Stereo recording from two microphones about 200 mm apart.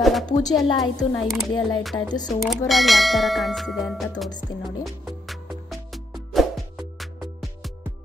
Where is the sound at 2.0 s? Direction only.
20° left (ahead or behind).